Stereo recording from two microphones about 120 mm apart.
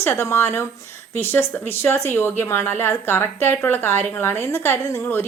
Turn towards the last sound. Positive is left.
turn(degrees=20)  # may be behind; listen again after turning